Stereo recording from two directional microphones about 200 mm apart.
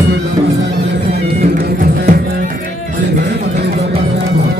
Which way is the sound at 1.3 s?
50° right (ahead or behind).